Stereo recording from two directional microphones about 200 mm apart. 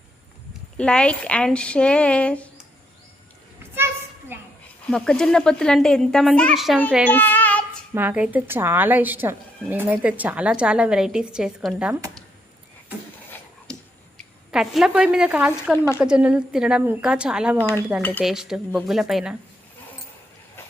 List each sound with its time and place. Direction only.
0.8 s speech: 5° left (ahead or behind)
4.3 s a sound: 10° right (ahead or behind)
4.9 s speech: 5° left (ahead or behind)
7.1 s child singing: 10° left (ahead or behind)
7.9 s a woman's voice: 10° right (ahead or behind)
14.5 s speech: centre (ahead or behind)